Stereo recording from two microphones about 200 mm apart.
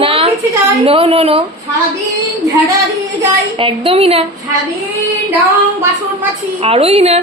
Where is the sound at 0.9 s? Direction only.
30° right (ahead or behind).